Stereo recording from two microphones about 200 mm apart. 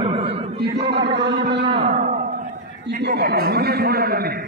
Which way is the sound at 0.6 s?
55° right (ahead or behind).